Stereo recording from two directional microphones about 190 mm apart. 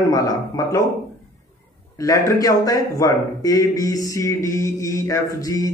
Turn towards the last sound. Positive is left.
turn(degrees=20)  # may be behind; listen again after turning